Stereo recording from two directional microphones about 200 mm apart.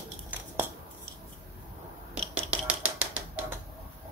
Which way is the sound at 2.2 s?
5° right (ahead or behind).